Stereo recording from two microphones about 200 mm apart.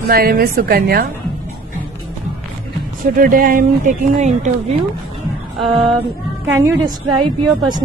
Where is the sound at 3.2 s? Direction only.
45° right (ahead or behind).